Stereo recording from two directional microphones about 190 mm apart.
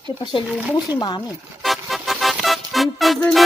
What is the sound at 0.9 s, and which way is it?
Speech, 20° left (ahead or behind).